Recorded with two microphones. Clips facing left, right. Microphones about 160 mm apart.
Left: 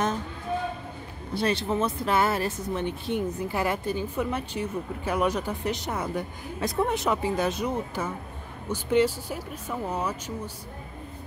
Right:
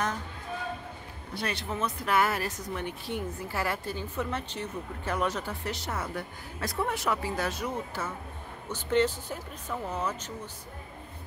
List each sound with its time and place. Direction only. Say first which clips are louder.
1.3 s speech: left 8 dB; 30° left (ahead or behind); by 10.5 s 10° left (ahead or behind)